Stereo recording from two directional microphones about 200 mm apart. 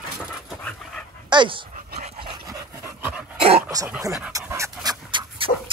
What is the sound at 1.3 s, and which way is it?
Dog, 25° right (ahead or behind).